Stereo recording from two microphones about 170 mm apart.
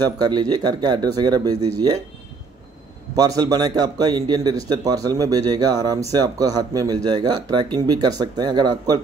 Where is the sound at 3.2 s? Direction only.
25° right (ahead or behind).